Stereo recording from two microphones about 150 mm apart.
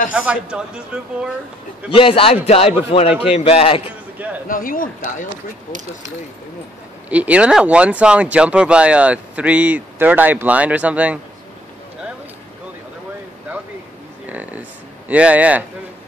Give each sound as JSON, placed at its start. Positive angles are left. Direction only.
{"t": 0.1, "sound": "speech", "side_deg": -5}
{"t": 2.0, "sound": "a man's voice", "side_deg": 35}
{"t": 4.5, "sound": "speech", "side_deg": 65}
{"t": 7.1, "sound": "speech", "side_deg": -10}
{"t": 14.2, "sound": "a sound", "side_deg": -10}